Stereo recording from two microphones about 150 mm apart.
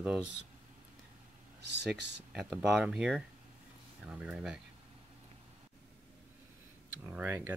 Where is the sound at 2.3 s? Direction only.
5° right (ahead or behind).